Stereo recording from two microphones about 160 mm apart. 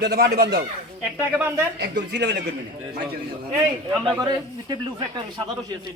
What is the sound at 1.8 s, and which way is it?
Speech, 90° right.